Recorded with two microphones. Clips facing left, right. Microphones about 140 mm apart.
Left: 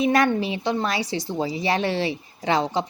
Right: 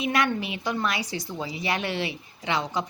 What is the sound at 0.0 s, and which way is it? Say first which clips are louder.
Speech: left 6 dB; 35° left (ahead or behind).